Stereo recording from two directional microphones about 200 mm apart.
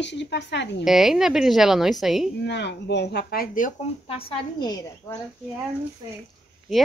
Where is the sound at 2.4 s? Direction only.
60° left (ahead or behind).